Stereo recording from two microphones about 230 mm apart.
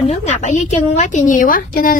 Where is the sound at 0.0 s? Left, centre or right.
Left.